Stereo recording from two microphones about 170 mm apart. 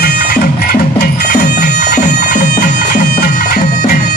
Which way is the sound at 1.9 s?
65° left (ahead or behind).